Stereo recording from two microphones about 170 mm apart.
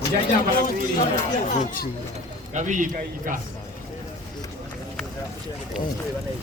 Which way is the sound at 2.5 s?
45° right (ahead or behind).